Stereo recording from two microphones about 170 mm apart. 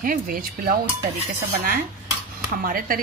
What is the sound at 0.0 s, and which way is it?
Speech, 55° right (ahead or behind).